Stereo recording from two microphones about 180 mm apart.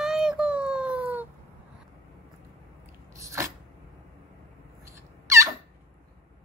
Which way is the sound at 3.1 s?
15° right (ahead or behind).